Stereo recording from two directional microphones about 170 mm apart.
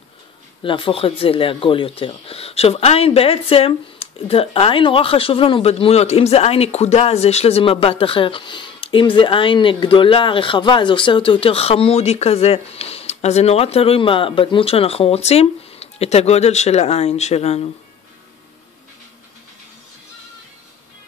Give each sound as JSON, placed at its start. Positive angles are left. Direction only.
{"t": 0.7, "sound": "speech", "side_deg": 30}